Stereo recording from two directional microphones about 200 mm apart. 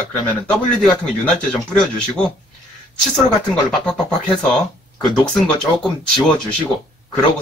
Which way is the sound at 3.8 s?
5° left (ahead or behind).